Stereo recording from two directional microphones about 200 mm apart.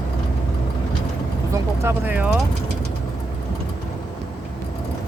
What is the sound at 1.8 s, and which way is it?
Speech, 10° right (ahead or behind).